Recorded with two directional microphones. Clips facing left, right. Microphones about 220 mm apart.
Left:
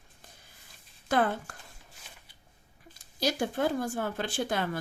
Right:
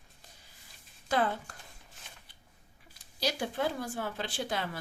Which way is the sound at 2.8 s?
45° left (ahead or behind).